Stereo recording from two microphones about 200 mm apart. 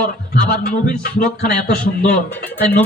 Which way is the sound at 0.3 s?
45° left (ahead or behind).